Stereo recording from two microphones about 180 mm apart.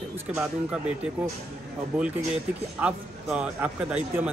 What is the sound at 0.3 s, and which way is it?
Speech, 5° right (ahead or behind).